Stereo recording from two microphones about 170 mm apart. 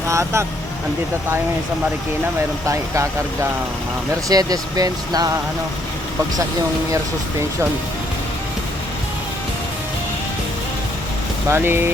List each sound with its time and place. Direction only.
0.1 s speech: 15° right (ahead or behind)
2.6 s speech: 20° right (ahead or behind)
4.1 s speech: 20° right (ahead or behind)
11.4 s speech: 15° right (ahead or behind)